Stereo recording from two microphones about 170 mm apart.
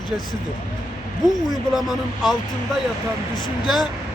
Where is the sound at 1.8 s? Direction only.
Centre (ahead or behind).